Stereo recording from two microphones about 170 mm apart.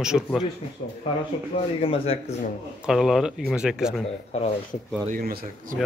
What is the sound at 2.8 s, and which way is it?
Speech, centre (ahead or behind).